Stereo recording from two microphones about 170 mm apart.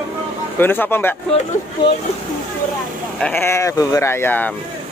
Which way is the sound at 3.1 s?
10° left (ahead or behind).